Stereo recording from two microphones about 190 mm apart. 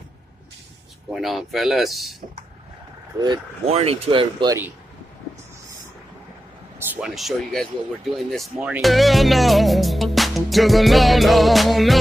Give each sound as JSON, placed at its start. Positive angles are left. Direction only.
{"t": 1.1, "sound": "speech", "side_deg": 0}
{"t": 3.6, "sound": "speech", "side_deg": -30}
{"t": 6.8, "sound": "speech", "side_deg": -5}